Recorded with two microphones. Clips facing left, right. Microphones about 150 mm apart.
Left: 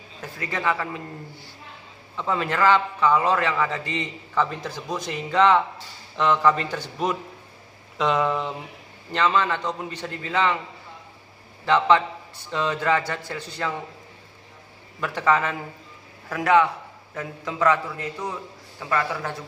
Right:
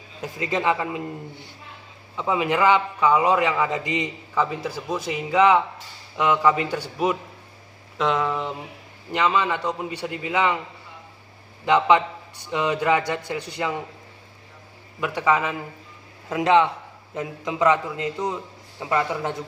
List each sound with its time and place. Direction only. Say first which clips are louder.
0.2 s a man's voice: right 4 dB; 20° right (ahead or behind); by 8.5 s centre (ahead or behind)
9.1 s a man's voice: even; 10° right (ahead or behind)
11.6 s a man's voice: right 1 dB; 15° right (ahead or behind)
15.0 s a man's voice: even; 10° right (ahead or behind)
16.3 s a man's voice: right 1 dB; 20° right (ahead or behind)